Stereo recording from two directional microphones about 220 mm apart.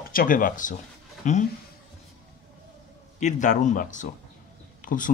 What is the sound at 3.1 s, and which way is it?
Speech, 35° left (ahead or behind).